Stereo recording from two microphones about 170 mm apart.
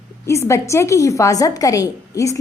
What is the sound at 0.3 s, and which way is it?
A woman's voice, 15° left (ahead or behind).